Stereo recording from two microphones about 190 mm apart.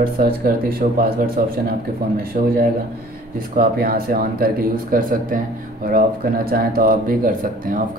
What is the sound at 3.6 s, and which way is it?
Speech, 50° right (ahead or behind).